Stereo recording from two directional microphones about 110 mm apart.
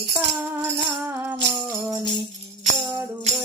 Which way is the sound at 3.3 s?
80° right.